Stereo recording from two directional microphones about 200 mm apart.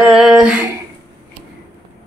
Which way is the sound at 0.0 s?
Centre (ahead or behind).